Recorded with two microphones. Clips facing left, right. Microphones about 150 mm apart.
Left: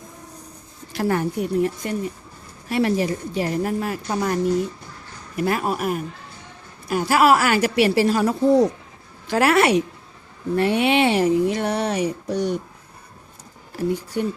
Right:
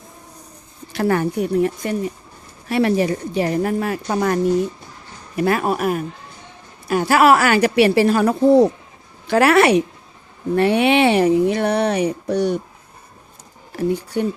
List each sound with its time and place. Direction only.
0.9 s speech: 75° right (ahead or behind)
5.4 s speech: 70° right (ahead or behind)
13.7 s speech: 65° right (ahead or behind)